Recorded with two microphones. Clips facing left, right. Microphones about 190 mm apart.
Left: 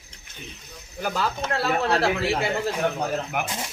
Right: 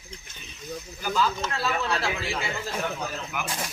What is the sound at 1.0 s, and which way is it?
A man's voice, 60° left (ahead or behind).